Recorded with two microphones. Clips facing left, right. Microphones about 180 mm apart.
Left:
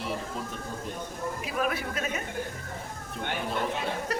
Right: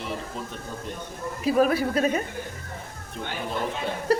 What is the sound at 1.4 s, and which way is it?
Speech, 35° right (ahead or behind).